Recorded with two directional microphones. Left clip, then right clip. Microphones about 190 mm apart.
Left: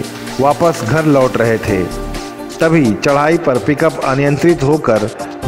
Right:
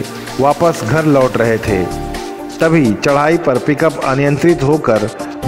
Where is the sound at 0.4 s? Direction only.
Centre (ahead or behind).